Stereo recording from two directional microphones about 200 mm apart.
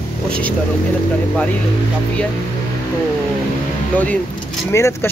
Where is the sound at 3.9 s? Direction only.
5° left (ahead or behind).